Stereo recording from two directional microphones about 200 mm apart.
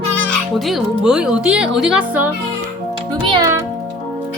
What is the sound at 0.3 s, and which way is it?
Speech, centre (ahead or behind).